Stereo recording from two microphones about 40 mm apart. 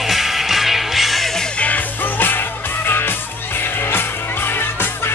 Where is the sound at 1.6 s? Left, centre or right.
Left.